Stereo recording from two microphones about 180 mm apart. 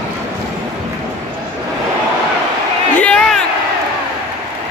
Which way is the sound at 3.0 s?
5° left (ahead or behind).